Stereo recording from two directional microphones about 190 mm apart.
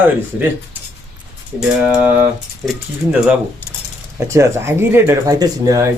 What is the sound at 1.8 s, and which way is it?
Speech, 10° right (ahead or behind).